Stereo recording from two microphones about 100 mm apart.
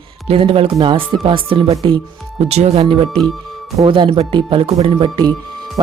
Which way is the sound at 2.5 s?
80° right.